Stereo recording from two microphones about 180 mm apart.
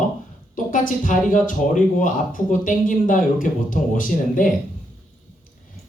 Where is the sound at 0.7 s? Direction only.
45° left (ahead or behind).